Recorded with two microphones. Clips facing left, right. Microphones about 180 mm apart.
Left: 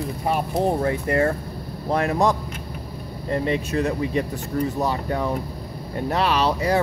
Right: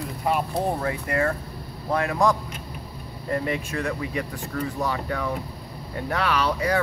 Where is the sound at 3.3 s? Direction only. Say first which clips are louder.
Left 4 dB; 25° left (ahead or behind).